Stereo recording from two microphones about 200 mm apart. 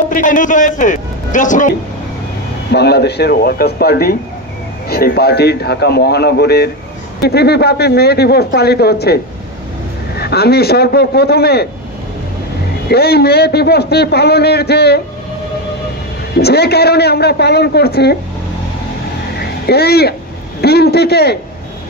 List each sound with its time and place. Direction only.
0.1 s a man's voice: 40° left (ahead or behind)
2.7 s a man's voice: 55° left (ahead or behind)
12.8 s a man's voice: 50° left (ahead or behind)
16.3 s a man's voice: 55° left (ahead or behind)
19.6 s a man's voice: 55° left (ahead or behind)